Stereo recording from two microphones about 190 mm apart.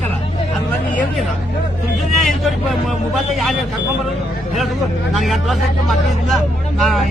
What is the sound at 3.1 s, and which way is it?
Speech, centre (ahead or behind).